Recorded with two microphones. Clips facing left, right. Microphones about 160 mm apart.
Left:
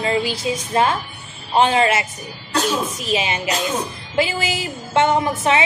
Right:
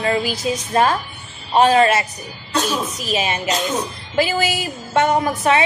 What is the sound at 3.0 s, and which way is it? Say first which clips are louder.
Speech: even; 25° left (ahead or behind).